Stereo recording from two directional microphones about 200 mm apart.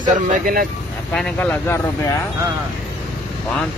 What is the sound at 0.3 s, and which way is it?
Speech, 45° right (ahead or behind).